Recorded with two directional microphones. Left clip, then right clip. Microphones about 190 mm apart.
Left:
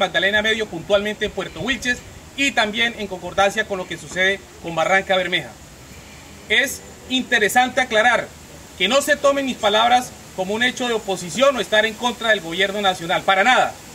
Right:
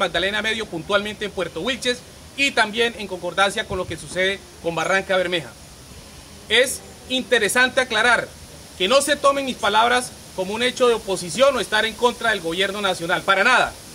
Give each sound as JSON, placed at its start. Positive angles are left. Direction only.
{"t": 0.0, "sound": "a man's voice", "side_deg": -15}
{"t": 6.5, "sound": "a man's voice", "side_deg": -15}